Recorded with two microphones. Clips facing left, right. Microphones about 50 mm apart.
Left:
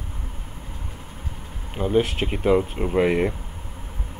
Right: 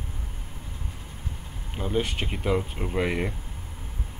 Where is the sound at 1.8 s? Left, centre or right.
Centre.